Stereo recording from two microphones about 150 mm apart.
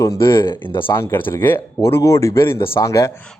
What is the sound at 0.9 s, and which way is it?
Speech, 15° left (ahead or behind).